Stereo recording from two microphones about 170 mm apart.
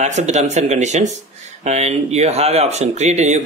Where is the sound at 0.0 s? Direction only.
40° right (ahead or behind).